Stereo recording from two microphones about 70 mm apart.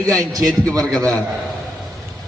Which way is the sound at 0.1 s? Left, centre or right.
Right.